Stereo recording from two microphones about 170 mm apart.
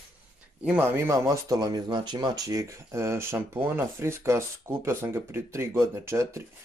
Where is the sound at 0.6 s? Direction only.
10° right (ahead or behind).